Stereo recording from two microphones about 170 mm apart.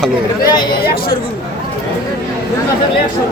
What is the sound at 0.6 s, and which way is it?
Speech, 60° left (ahead or behind).